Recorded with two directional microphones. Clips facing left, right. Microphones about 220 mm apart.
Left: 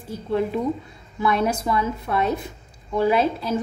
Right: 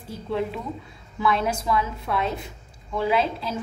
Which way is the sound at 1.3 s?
45° left (ahead or behind).